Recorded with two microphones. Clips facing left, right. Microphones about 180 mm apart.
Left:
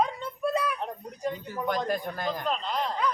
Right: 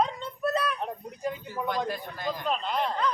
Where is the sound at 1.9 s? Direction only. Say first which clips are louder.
Left 3 dB; 45° left (ahead or behind).